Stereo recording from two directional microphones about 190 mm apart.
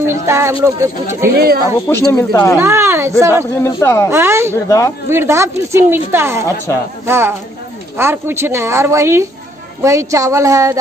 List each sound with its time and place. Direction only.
0.0 s speech: 15° right (ahead or behind)
1.3 s speech: 55° right (ahead or behind)
1.9 s speech: 15° left (ahead or behind)
2.6 s speech: 15° right (ahead or behind)
3.5 s speech: 15° left (ahead or behind)
4.1 s speech: 15° right (ahead or behind)
4.6 s speech: 15° left (ahead or behind)
5.1 s speech: 15° right (ahead or behind)